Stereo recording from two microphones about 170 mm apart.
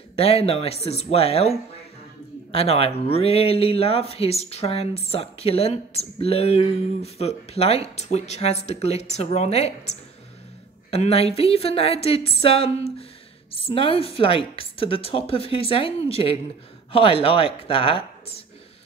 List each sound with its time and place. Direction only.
0.1 s speech: 35° left (ahead or behind)